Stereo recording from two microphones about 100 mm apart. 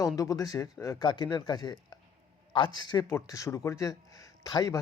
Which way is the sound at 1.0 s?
50° left (ahead or behind).